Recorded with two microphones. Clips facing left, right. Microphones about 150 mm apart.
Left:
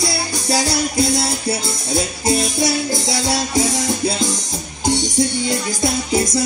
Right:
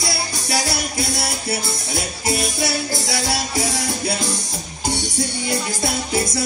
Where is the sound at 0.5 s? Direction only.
20° left (ahead or behind).